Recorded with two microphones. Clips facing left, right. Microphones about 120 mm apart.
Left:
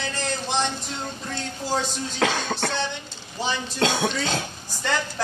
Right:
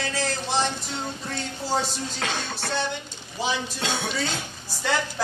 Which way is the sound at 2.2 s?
90° left.